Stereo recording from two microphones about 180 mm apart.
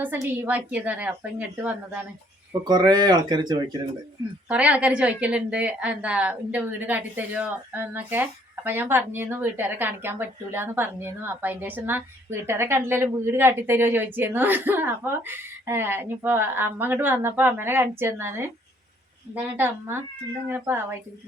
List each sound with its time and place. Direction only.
0.0 s a woman's voice: 10° right (ahead or behind)
2.6 s speech: 20° right (ahead or behind)
4.4 s a woman's voice: 5° right (ahead or behind)